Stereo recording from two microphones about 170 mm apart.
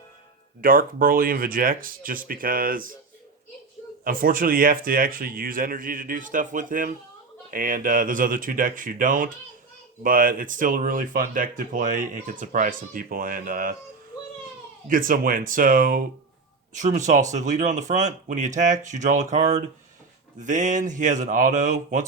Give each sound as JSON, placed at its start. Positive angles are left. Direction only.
{"t": 0.6, "sound": "speech", "side_deg": -55}
{"t": 4.0, "sound": "speech", "side_deg": -55}
{"t": 14.8, "sound": "speech", "side_deg": -50}
{"t": 16.7, "sound": "speech", "side_deg": -45}